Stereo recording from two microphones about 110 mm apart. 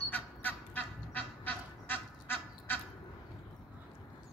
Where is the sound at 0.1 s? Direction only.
15° left (ahead or behind).